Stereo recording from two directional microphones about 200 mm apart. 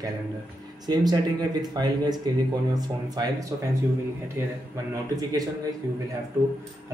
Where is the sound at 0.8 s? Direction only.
20° right (ahead or behind).